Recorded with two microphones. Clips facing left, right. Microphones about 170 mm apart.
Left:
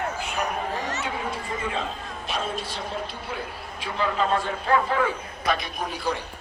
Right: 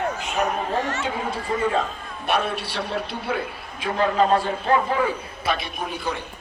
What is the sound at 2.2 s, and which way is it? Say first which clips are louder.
Speech: right 6 dB; 65° right (ahead or behind).